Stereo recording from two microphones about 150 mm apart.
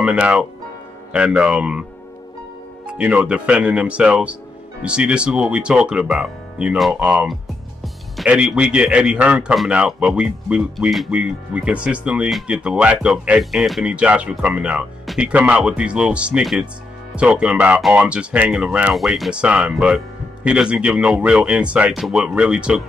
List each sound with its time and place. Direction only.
0.0 s a man's voice: 5° right (ahead or behind)
2.9 s a man's voice: 5° right (ahead or behind)